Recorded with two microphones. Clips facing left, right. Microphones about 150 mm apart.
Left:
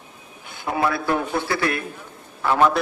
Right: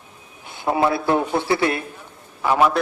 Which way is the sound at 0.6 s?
25° right (ahead or behind).